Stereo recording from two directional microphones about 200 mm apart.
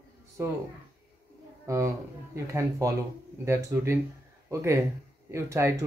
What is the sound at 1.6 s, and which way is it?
Speech, 15° right (ahead or behind).